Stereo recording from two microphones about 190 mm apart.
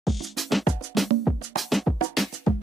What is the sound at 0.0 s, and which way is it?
Music, centre (ahead or behind).